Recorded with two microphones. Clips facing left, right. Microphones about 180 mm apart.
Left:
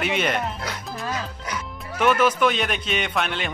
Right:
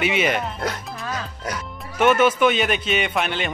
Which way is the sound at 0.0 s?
5° right (ahead or behind).